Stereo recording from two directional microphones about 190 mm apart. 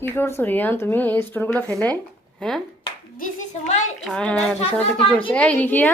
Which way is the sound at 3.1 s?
40° left (ahead or behind).